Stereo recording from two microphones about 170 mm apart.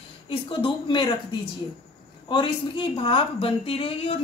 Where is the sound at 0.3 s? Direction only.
30° left (ahead or behind).